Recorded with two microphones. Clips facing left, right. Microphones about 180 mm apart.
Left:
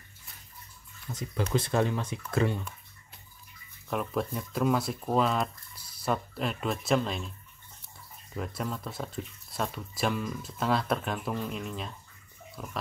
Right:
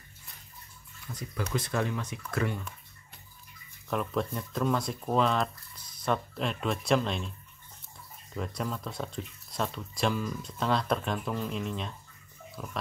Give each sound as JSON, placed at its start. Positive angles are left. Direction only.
{"t": 1.1, "sound": "speech", "side_deg": 25}
{"t": 3.9, "sound": "speech", "side_deg": 5}
{"t": 8.4, "sound": "speech", "side_deg": 0}